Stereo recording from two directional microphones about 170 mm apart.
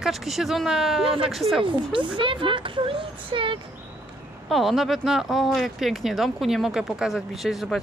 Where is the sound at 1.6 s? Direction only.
30° right (ahead or behind).